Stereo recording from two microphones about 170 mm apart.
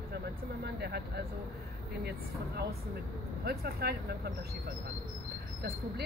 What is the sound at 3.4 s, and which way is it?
Speech, 65° right (ahead or behind).